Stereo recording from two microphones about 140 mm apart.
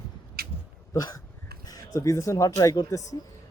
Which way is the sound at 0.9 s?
25° left (ahead or behind).